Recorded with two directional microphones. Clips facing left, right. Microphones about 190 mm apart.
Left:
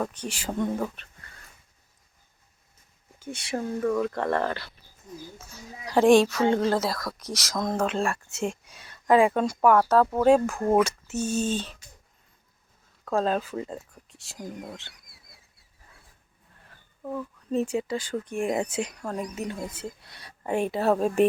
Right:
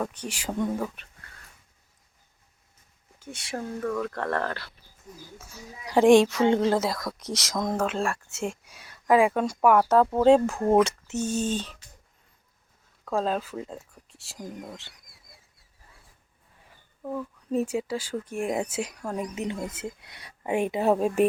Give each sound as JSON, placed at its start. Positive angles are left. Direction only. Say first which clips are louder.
{"t": 0.1, "sound": "speech", "louder": "even", "side_deg": -10}
{"t": 3.2, "sound": "speech", "louder": "left 3 dB", "side_deg": 0}
{"t": 5.4, "sound": "speech", "louder": "left 1 dB", "side_deg": -10}
{"t": 13.1, "sound": "speech", "louder": "left 2 dB", "side_deg": 0}
{"t": 16.6, "sound": "speech", "louder": "right 1 dB", "side_deg": -5}
{"t": 19.7, "sound": "speech", "louder": "right 1 dB", "side_deg": -20}